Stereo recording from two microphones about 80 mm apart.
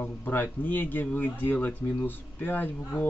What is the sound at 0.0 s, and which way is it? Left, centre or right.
Speech, left.